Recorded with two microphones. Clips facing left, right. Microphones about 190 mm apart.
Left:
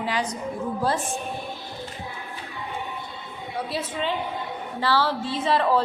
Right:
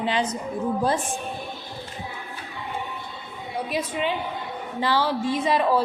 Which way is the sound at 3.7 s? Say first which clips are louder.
Right 2 dB; 15° right (ahead or behind).